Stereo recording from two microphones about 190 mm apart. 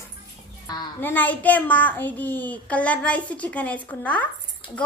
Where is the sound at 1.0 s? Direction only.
10° left (ahead or behind).